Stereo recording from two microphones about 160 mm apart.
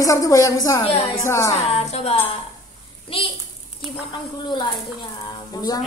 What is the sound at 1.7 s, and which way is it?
Speech, 40° left (ahead or behind).